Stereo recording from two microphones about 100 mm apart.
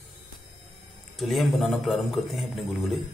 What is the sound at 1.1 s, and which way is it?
A man's voice, centre (ahead or behind).